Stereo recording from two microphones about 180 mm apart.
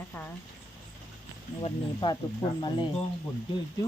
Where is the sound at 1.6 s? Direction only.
25° left (ahead or behind).